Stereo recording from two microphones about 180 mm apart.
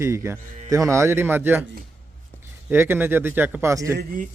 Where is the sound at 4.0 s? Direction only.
55° right (ahead or behind).